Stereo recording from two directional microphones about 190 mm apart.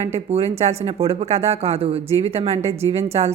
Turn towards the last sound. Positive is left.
turn(degrees=-30)  # may be behind; listen again after turning